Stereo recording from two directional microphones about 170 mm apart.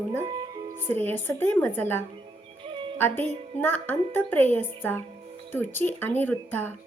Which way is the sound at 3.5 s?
10° left (ahead or behind).